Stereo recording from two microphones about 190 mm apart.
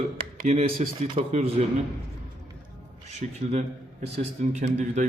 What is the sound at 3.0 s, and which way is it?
A man's voice, 35° right (ahead or behind).